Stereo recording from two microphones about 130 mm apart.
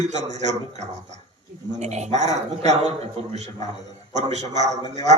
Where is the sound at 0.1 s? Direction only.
60° right (ahead or behind).